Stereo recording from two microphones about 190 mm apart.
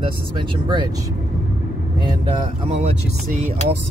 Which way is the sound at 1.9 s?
25° right (ahead or behind).